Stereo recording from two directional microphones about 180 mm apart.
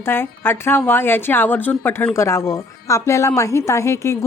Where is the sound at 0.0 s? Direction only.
10° left (ahead or behind).